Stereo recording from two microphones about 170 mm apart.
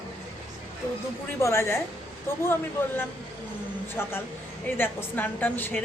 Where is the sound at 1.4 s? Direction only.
15° left (ahead or behind).